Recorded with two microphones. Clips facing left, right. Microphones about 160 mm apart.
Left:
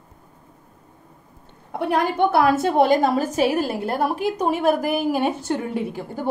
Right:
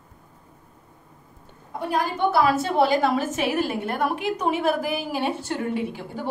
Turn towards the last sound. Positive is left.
turn(degrees=45)  # may be behind; listen again after turning